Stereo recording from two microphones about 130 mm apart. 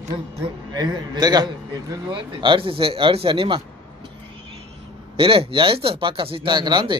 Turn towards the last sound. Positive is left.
turn(degrees=-35)  # may be behind; listen again after turning